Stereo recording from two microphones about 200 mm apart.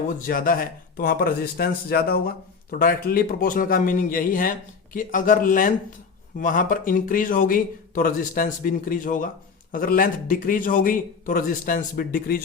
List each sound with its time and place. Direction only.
0.1 s speech: 45° left (ahead or behind)